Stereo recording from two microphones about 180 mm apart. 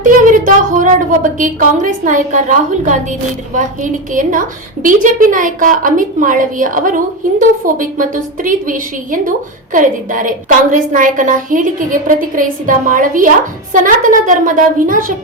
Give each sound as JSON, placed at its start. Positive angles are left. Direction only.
{"t": 0.0, "sound": "a woman's voice", "side_deg": -45}